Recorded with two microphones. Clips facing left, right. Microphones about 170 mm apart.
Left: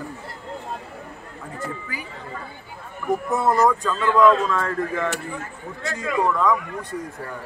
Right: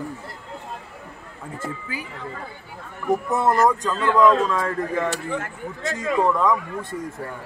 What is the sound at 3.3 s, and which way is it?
Speech, centre (ahead or behind).